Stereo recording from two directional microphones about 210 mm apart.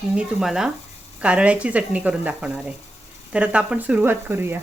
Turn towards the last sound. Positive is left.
turn(degrees=-10)  # may be behind; listen again after turning